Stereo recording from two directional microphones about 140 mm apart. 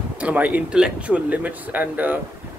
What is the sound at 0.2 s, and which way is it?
Speech, 10° right (ahead or behind).